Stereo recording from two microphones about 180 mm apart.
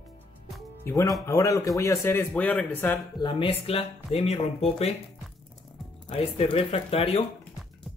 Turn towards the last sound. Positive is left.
turn(degrees=35)  # may be behind; listen again after turning